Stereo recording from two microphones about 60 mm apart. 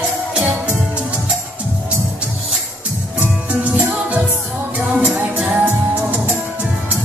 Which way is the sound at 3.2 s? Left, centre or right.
Right.